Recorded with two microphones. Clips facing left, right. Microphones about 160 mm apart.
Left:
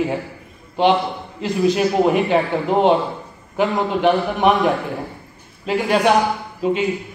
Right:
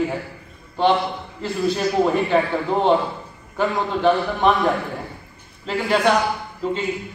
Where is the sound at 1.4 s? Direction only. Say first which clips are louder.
Left 4 dB; 15° left (ahead or behind).